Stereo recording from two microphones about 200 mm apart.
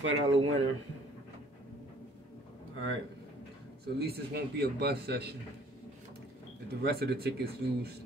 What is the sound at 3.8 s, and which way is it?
A man's voice, 50° right (ahead or behind).